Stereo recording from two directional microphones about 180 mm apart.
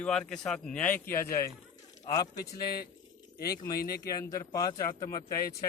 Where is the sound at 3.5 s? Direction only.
20° left (ahead or behind).